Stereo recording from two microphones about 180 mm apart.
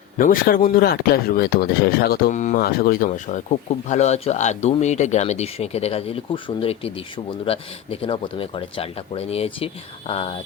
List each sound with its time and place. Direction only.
0.2 s speech: 50° left (ahead or behind)
2.0 s speech: 45° left (ahead or behind)